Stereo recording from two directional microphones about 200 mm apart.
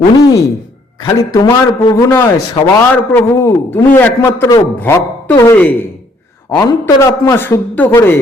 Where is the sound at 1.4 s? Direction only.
20° left (ahead or behind).